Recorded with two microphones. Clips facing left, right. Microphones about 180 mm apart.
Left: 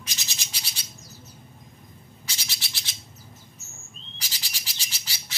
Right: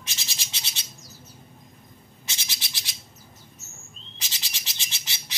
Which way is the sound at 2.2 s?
20° right (ahead or behind).